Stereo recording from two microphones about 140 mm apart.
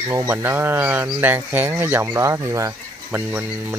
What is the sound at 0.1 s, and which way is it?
Speech, 15° right (ahead or behind).